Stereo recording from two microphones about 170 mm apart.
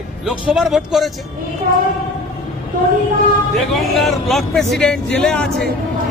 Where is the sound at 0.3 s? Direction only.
5° right (ahead or behind).